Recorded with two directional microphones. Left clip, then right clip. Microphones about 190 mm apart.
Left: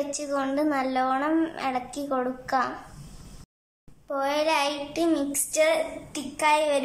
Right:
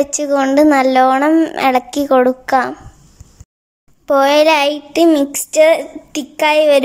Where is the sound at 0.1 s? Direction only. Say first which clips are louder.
Right 14 dB; 45° right (ahead or behind).